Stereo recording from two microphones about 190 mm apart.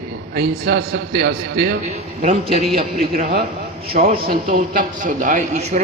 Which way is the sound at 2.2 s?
30° right (ahead or behind).